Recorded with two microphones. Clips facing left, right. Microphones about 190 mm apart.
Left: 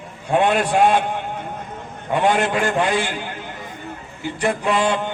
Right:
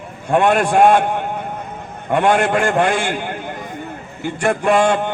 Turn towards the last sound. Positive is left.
turn(degrees=-50)  # may be behind; listen again after turning